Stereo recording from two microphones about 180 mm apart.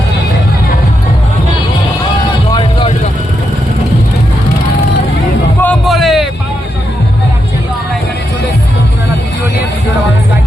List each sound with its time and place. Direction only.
2.5 s vehicle: 25° left (ahead or behind)
5.5 s music: 5° left (ahead or behind)